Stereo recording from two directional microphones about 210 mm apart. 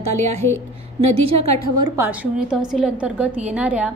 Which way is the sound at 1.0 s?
30° right (ahead or behind).